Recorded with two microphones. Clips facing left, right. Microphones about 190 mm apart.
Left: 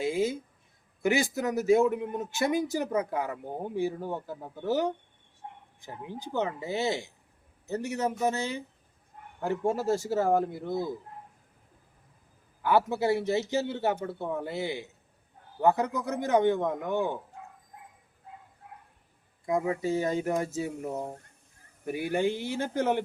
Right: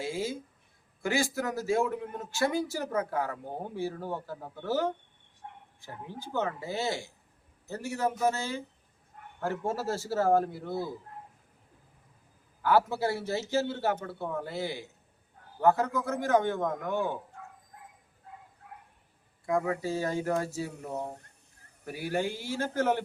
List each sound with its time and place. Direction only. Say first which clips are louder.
0.0 s a man's voice: left 5 dB; 20° left (ahead or behind)
5.4 s a sound: left 2 dB; 25° left (ahead or behind)
5.8 s a man's voice: left 3 dB; 15° left (ahead or behind)
12.6 s a man's voice: left 1 dB; 20° left (ahead or behind)
17.4 s bow-wow: left 1 dB; 20° left (ahead or behind)
18.6 s a sound: even; 25° left (ahead or behind)
19.5 s speech: left 1 dB; 20° left (ahead or behind)
21.8 s speech: left 4 dB; 20° left (ahead or behind)